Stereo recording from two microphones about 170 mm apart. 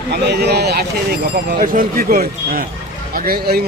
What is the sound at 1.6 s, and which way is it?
Speech, 55° right (ahead or behind).